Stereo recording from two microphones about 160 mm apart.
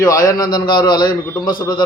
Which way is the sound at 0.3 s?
25° left (ahead or behind).